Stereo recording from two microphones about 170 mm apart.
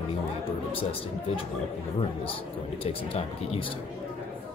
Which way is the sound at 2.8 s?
35° left (ahead or behind).